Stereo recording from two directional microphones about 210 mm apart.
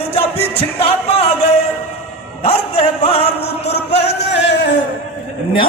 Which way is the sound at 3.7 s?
55° left (ahead or behind).